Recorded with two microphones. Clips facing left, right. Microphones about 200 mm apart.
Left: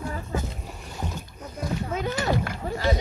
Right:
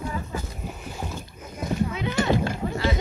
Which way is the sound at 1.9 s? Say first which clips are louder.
Left 1 dB; 45° left (ahead or behind).